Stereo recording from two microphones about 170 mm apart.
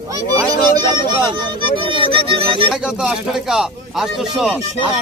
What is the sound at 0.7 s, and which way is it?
Speech, 25° right (ahead or behind).